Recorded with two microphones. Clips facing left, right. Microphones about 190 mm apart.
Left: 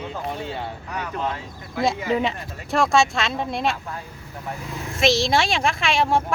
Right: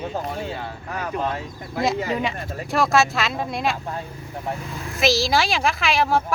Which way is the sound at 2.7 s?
Centre (ahead or behind).